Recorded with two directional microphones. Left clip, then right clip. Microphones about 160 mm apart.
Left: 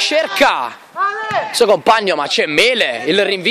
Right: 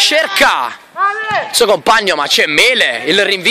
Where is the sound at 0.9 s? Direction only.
65° left (ahead or behind).